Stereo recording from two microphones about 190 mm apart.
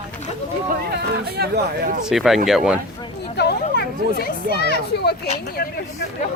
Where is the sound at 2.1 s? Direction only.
Centre (ahead or behind).